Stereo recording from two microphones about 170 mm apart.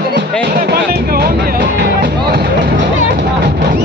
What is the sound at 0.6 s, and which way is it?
Music, 60° right (ahead or behind).